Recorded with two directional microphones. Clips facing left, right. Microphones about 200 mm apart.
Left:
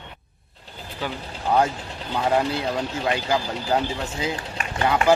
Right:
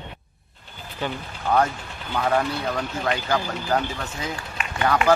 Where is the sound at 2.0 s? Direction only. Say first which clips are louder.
Left 1 dB; 30° left (ahead or behind).